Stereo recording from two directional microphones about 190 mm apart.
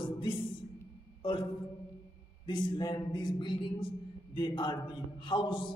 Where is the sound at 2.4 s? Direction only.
20° left (ahead or behind).